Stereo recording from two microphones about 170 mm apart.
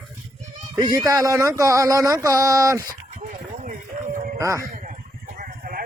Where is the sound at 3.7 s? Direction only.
50° right (ahead or behind).